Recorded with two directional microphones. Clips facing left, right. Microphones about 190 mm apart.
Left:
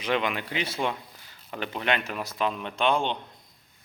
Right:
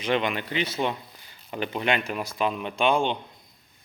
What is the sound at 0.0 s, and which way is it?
Speech, centre (ahead or behind).